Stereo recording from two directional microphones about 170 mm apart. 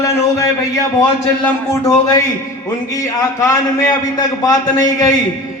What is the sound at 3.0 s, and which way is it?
A man's voice, 20° left (ahead or behind).